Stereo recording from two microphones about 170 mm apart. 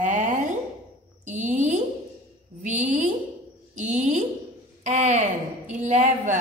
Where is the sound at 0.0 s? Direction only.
50° right (ahead or behind).